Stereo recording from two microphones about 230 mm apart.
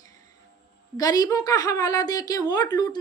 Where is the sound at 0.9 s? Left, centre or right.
Centre.